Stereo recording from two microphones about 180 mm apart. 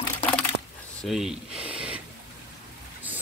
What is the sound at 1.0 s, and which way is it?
Speech, centre (ahead or behind).